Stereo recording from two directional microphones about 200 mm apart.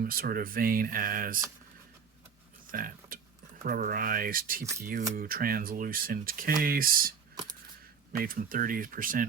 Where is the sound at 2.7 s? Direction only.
45° right (ahead or behind).